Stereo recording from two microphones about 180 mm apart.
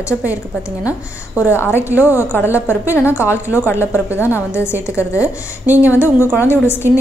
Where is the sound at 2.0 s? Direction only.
15° left (ahead or behind).